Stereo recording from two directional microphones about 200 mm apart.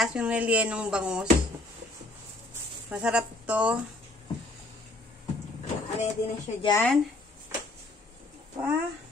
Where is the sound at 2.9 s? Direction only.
5° right (ahead or behind).